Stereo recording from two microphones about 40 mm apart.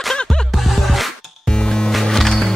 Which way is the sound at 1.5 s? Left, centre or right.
Left.